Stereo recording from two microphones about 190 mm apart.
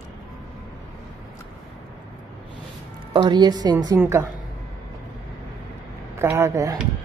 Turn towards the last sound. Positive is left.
turn(degrees=-15)  # may be behind; listen again after turning